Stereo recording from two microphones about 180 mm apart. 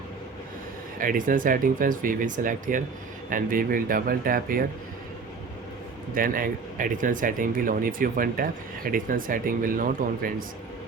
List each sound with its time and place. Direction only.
0.9 s speech: 50° right (ahead or behind)
6.1 s speech: 50° right (ahead or behind)